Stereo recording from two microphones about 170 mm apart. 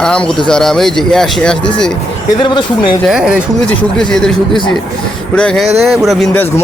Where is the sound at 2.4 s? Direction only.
30° left (ahead or behind).